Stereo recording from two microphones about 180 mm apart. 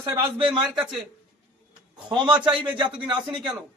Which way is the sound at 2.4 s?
30° right (ahead or behind).